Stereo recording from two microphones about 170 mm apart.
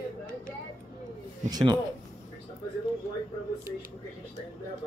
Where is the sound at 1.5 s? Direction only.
25° right (ahead or behind).